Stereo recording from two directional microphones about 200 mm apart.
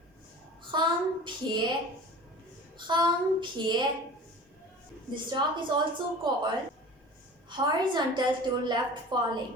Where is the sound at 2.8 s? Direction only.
25° right (ahead or behind).